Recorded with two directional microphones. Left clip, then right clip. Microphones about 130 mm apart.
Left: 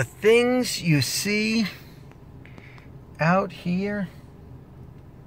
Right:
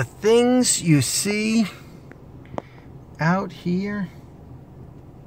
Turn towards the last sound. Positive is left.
turn(degrees=-15)  # may be behind; listen again after turning